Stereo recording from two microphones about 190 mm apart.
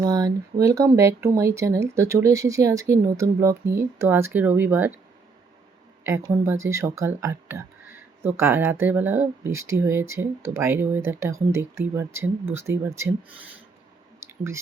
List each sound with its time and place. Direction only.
0.0 s speech: 20° right (ahead or behind)
6.1 s speech: 15° right (ahead or behind)
14.2 s a sound: 15° right (ahead or behind)